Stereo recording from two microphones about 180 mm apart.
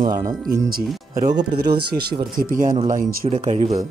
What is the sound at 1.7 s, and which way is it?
A man's voice, 60° right (ahead or behind).